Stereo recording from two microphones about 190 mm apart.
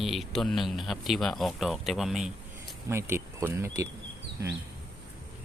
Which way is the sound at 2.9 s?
15° right (ahead or behind).